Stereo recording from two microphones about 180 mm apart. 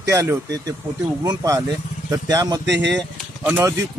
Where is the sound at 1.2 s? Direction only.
20° right (ahead or behind).